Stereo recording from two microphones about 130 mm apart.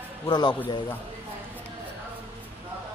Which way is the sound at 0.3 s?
35° left (ahead or behind).